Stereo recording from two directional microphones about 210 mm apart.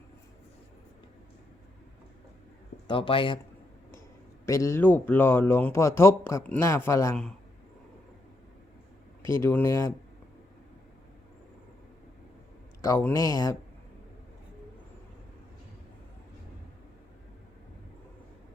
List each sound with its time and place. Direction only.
2.8 s speech: 25° left (ahead or behind)
4.4 s speech: 15° left (ahead or behind)
9.2 s speech: 10° left (ahead or behind)
12.8 s speech: 10° left (ahead or behind)